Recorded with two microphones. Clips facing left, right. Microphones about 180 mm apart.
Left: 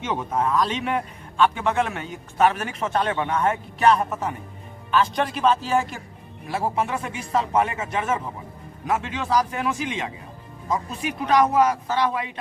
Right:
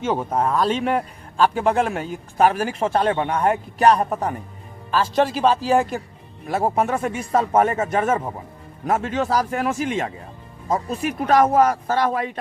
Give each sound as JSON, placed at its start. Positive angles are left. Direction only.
{"t": 0.0, "sound": "a man's voice", "side_deg": -30}